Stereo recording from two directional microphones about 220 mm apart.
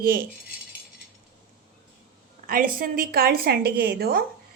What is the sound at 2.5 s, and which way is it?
A woman's voice, 40° right (ahead or behind).